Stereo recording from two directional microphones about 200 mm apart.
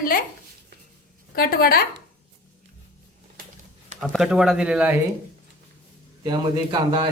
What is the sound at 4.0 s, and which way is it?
Speech, centre (ahead or behind).